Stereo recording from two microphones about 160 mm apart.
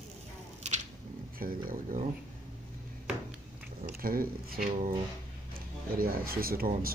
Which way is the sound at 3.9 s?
65° right (ahead or behind).